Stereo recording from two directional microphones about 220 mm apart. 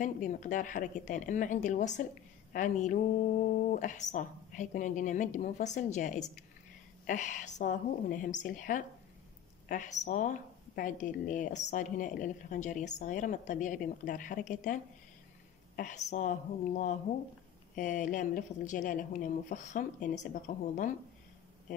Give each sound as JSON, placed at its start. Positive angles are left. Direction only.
{"t": 0.0, "sound": "a woman's voice", "side_deg": 35}